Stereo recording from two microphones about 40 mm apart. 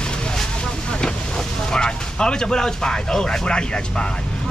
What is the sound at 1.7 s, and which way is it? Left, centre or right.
Speech, left.